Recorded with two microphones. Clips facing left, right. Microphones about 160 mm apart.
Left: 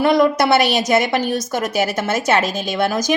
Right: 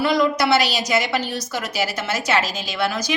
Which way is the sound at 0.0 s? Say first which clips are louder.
Left 4 dB; 55° left (ahead or behind).